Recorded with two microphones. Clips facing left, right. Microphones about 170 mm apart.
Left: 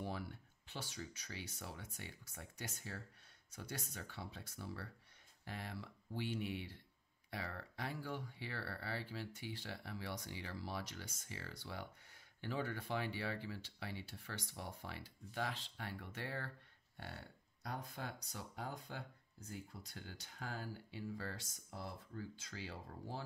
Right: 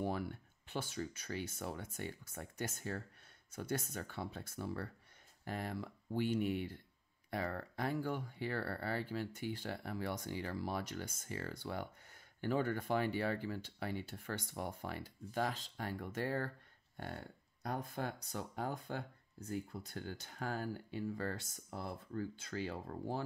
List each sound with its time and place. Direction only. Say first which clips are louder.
0.0 s speech: right 6 dB; 50° right (ahead or behind)